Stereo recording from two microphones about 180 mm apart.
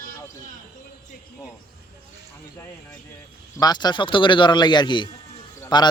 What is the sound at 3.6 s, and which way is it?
A man's voice, 20° left (ahead or behind).